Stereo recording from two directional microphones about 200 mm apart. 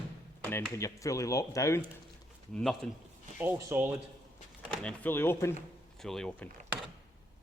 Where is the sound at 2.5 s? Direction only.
Centre (ahead or behind).